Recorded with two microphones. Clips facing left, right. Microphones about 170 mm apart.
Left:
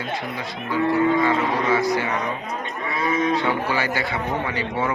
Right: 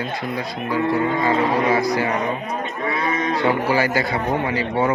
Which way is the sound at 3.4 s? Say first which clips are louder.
Right 4 dB; 40° right (ahead or behind).